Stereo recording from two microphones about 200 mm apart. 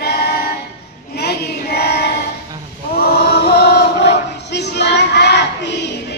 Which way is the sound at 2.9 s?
50° left (ahead or behind).